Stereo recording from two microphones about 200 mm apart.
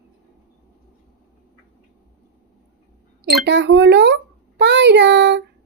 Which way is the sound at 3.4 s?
60° right (ahead or behind).